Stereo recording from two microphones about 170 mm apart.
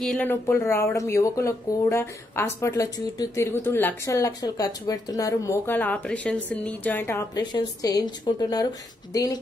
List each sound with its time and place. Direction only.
0.0 s a woman's voice: 5° left (ahead or behind)